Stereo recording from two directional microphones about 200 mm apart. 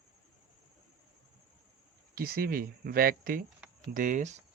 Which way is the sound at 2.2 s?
50° right (ahead or behind).